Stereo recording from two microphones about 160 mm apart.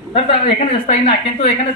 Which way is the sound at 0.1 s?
40° left (ahead or behind).